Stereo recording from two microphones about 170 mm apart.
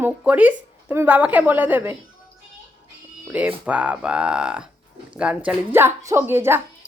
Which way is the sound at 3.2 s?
10° right (ahead or behind).